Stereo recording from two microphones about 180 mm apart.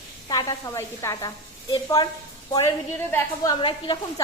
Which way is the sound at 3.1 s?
20° left (ahead or behind).